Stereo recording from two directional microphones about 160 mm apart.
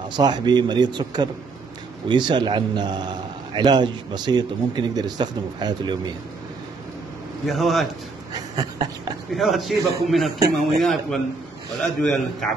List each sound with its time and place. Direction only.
0.1 s a man's voice: 25° right (ahead or behind)
7.4 s a man's voice: centre (ahead or behind)
8.3 s a sound: 25° right (ahead or behind)
9.3 s a man's voice: centre (ahead or behind)